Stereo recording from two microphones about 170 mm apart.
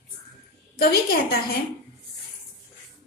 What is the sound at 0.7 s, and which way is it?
Speech, 65° left (ahead or behind).